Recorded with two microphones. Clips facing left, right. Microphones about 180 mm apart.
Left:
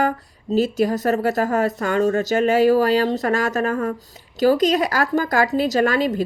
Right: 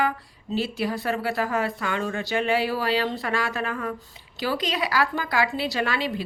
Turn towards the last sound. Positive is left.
turn(degrees=45)  # may be behind; listen again after turning